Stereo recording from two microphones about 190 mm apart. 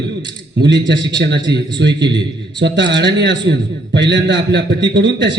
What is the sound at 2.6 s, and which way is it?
A man's voice, 70° right (ahead or behind).